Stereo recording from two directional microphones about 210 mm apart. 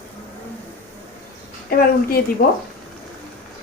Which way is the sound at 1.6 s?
45° left (ahead or behind).